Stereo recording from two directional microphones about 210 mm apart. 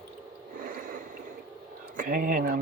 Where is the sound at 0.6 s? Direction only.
40° right (ahead or behind).